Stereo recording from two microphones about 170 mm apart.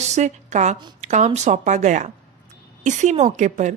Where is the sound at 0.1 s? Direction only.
45° right (ahead or behind).